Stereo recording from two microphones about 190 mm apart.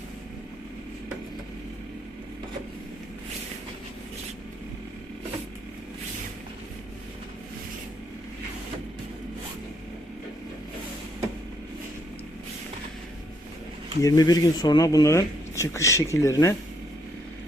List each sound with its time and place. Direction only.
14.0 s speech: 20° left (ahead or behind)